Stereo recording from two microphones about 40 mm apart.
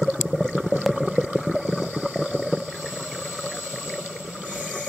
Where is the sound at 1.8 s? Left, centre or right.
Right.